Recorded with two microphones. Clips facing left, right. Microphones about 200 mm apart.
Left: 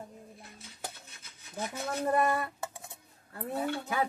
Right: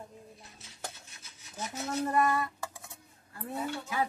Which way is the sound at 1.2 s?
60° left (ahead or behind).